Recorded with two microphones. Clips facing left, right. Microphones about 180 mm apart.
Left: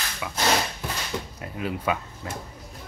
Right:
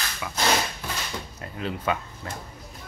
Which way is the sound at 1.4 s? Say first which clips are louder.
Left 1 dB; 10° left (ahead or behind).